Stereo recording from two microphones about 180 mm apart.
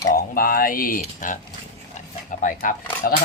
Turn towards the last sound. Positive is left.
turn(degrees=50)  # may be behind; listen again after turning